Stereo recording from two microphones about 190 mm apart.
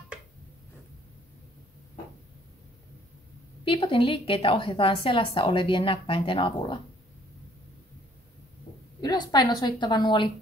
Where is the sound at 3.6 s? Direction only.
30° left (ahead or behind).